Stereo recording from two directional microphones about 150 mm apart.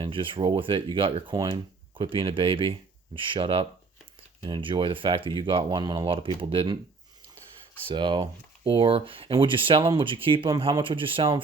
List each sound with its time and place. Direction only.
0.0 s speech: 35° right (ahead or behind)
7.9 s speech: 30° right (ahead or behind)